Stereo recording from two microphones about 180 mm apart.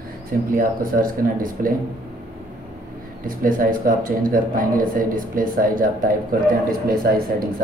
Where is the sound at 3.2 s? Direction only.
50° right (ahead or behind).